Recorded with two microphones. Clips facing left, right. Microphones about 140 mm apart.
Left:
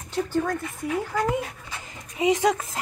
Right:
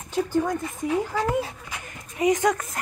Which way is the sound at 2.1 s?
15° left (ahead or behind).